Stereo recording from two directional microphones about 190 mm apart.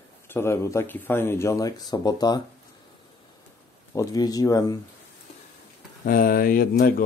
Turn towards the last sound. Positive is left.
turn(degrees=50)  # may be behind; listen again after turning